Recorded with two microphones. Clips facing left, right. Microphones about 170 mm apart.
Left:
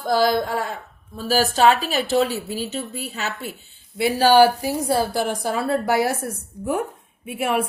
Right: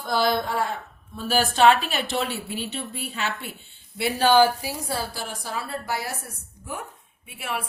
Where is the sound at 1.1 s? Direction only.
40° left (ahead or behind).